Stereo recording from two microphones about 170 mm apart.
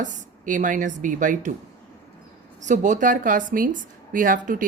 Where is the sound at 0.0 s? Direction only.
50° right (ahead or behind).